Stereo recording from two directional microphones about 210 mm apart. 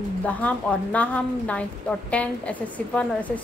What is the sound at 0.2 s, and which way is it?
Speech, 5° left (ahead or behind).